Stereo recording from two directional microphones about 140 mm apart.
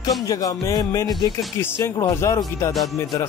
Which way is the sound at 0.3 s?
25° left (ahead or behind).